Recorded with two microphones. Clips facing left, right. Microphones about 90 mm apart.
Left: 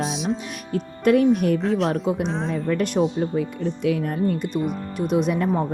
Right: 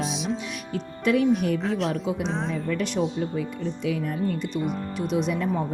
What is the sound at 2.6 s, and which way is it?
Speech, 50° left (ahead or behind).